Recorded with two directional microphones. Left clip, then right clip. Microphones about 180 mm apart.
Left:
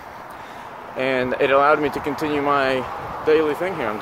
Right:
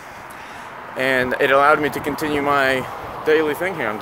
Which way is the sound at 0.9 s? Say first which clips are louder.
Right 2 dB; centre (ahead or behind).